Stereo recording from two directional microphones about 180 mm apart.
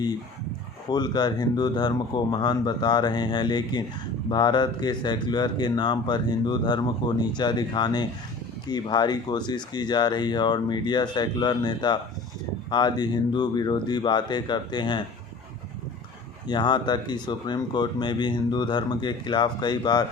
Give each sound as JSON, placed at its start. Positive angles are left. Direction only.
{"t": 0.9, "sound": "speech", "side_deg": 25}
{"t": 16.5, "sound": "speech", "side_deg": 25}